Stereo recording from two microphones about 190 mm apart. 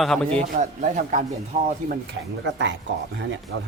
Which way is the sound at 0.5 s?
40° right (ahead or behind).